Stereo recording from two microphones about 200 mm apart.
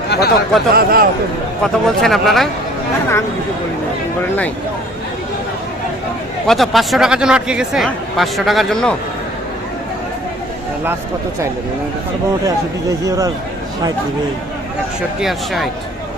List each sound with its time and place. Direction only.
0.1 s a sound: 50° left (ahead or behind)
0.7 s speech: 45° right (ahead or behind)
1.6 s speech: centre (ahead or behind)
6.5 s speech: centre (ahead or behind)
13.1 s speech: 15° right (ahead or behind)
15.2 s speech: centre (ahead or behind)